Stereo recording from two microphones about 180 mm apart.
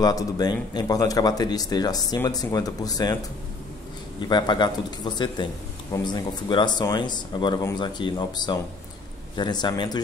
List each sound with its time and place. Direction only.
0.0 s speech: 20° left (ahead or behind)
4.2 s speech: 25° left (ahead or behind)